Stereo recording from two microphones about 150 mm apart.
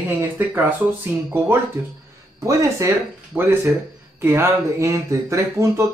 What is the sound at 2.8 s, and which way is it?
Speech, 20° right (ahead or behind).